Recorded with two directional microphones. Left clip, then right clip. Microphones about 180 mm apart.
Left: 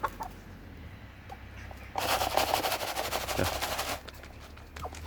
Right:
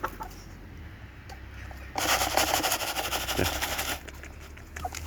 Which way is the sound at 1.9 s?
30° right (ahead or behind).